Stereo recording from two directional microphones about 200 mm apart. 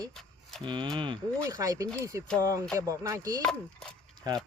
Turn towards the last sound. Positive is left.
turn(degrees=-20)  # may be behind; listen again after turning